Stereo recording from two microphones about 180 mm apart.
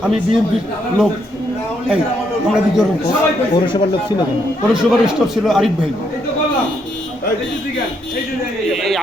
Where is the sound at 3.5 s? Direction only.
25° left (ahead or behind).